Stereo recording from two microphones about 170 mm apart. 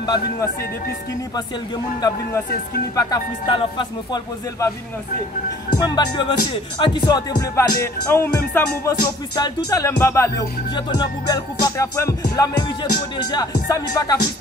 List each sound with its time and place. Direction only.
0.0 s music: 25° left (ahead or behind)
2.0 s music: 25° left (ahead or behind)
5.8 s music: 25° left (ahead or behind)